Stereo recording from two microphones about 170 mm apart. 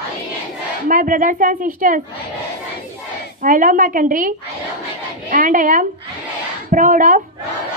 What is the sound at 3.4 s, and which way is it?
A woman's voice, 50° right (ahead or behind).